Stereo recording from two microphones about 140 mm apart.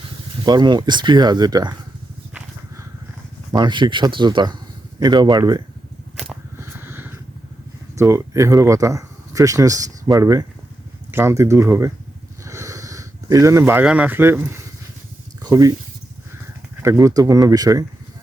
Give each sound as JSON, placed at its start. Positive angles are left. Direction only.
{"t": 0.4, "sound": "speech", "side_deg": -30}
{"t": 3.5, "sound": "speech", "side_deg": -35}
{"t": 6.6, "sound": "vehicle", "side_deg": -15}
{"t": 7.9, "sound": "speech", "side_deg": -20}
{"t": 12.5, "sound": "a sound", "side_deg": -20}
{"t": 13.8, "sound": "speech", "side_deg": -10}
{"t": 16.8, "sound": "speech", "side_deg": -20}